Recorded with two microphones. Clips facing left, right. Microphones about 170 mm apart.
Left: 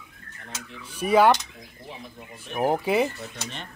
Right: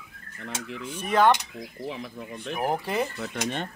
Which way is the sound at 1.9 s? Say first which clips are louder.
Right 3 dB; 90° right.